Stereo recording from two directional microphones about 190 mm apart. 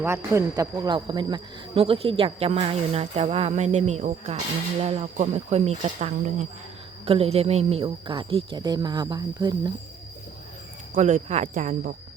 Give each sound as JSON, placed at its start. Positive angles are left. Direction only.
{"t": 0.3, "sound": "speech", "side_deg": -20}
{"t": 10.9, "sound": "speech", "side_deg": -40}